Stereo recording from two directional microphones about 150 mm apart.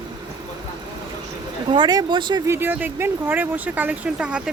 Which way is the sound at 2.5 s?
15° right (ahead or behind).